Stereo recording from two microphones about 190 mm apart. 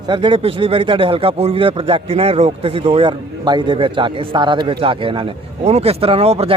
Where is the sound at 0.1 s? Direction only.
25° right (ahead or behind).